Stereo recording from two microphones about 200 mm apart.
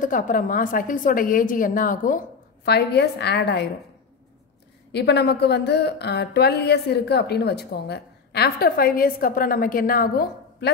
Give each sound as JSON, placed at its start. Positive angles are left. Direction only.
{"t": 0.0, "sound": "a woman's voice", "side_deg": 40}
{"t": 4.9, "sound": "a woman's voice", "side_deg": 55}